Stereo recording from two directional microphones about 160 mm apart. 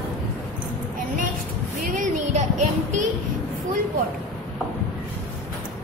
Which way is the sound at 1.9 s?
50° right (ahead or behind).